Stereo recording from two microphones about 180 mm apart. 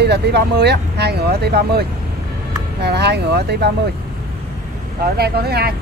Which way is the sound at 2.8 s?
65° right (ahead or behind).